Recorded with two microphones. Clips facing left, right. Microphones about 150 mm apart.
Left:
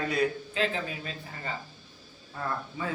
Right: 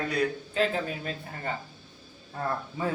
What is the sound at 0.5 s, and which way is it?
Speech, 45° right (ahead or behind).